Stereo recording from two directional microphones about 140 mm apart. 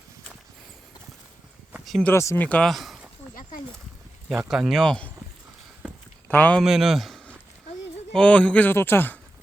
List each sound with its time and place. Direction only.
1.7 s a sound: centre (ahead or behind)
2.0 s a man's voice: 15° left (ahead or behind); by 3.1 s centre (ahead or behind)
4.3 s speech: 5° right (ahead or behind)
6.2 s speech: 10° left (ahead or behind)
6.6 s a man's voice: centre (ahead or behind); by 9.1 s 15° left (ahead or behind)